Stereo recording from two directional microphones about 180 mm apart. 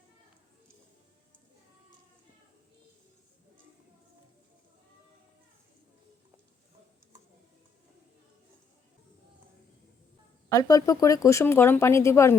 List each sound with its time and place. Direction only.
10.5 s speech: 20° left (ahead or behind)